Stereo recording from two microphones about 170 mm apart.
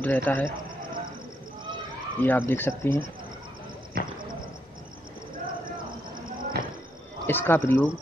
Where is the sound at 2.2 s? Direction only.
10° left (ahead or behind).